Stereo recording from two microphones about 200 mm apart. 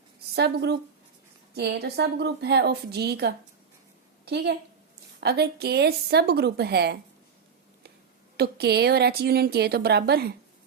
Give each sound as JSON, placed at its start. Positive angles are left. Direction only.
{"t": 0.3, "sound": "a woman's voice", "side_deg": -55}
{"t": 5.2, "sound": "a woman's voice", "side_deg": -55}
{"t": 8.4, "sound": "a woman's voice", "side_deg": -55}